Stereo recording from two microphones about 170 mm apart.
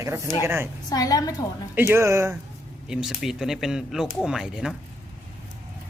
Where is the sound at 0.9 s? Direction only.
20° left (ahead or behind).